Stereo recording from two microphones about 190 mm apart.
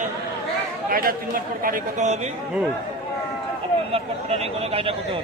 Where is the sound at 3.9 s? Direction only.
30° right (ahead or behind).